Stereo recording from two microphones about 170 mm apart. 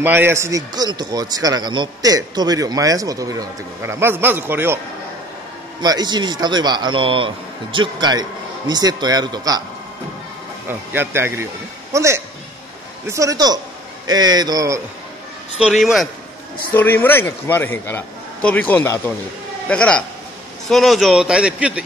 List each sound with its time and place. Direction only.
0.0 s a man's voice: 10° right (ahead or behind)
5.8 s a man's voice: 25° right (ahead or behind)
10.7 s a man's voice: 10° right (ahead or behind)
15.6 s a man's voice: centre (ahead or behind)
16.7 s a man's voice: 10° left (ahead or behind); by 21.8 s 5° right (ahead or behind)